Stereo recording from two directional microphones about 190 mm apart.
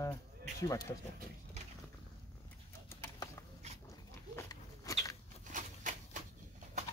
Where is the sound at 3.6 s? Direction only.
35° right (ahead or behind).